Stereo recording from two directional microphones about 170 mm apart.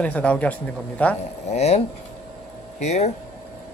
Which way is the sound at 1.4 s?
40° left (ahead or behind).